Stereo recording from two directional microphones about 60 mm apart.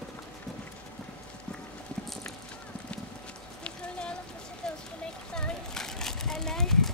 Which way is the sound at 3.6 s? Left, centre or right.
Centre.